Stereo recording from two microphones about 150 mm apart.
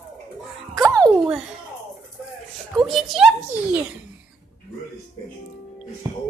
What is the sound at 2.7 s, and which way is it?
A child's voice, centre (ahead or behind).